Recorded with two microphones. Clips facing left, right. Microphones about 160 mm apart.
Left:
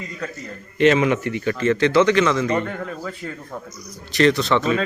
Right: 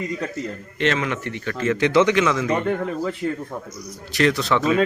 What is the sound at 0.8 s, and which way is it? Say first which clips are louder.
Speech: left 7 dB; 10° left (ahead or behind).